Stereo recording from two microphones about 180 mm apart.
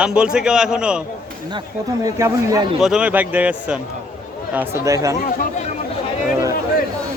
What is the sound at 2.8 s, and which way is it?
Speech, 5° right (ahead or behind).